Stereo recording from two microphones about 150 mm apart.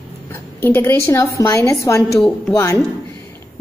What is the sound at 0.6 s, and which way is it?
A woman's voice, 15° left (ahead or behind).